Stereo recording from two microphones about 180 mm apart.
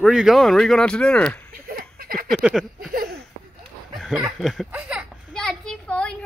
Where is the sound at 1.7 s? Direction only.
55° right (ahead or behind).